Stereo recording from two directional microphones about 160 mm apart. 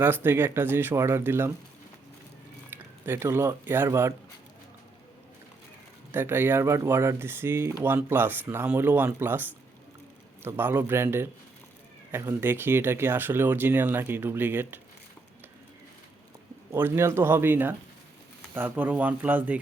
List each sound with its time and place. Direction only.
0.0 s speech: 15° right (ahead or behind)
2.6 s speech: 15° right (ahead or behind)
6.1 s speech: 15° right (ahead or behind)
16.7 s speech: 15° right (ahead or behind)